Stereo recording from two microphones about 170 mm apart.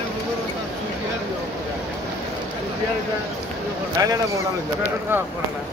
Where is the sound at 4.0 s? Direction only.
20° right (ahead or behind).